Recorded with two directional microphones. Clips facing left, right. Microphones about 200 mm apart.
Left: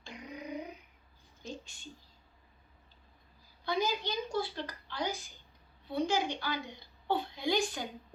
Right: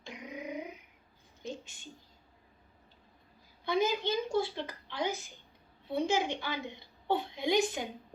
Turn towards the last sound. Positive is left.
turn(degrees=-20)  # may be behind; listen again after turning